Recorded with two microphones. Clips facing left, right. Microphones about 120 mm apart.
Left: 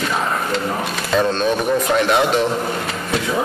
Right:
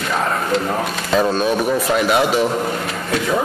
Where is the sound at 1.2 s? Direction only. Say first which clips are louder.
Right 1 dB; 5° right (ahead or behind).